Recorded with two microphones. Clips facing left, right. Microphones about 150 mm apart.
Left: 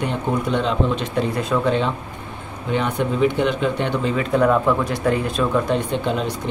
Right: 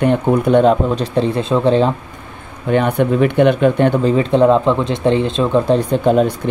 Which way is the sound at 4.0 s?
35° right (ahead or behind).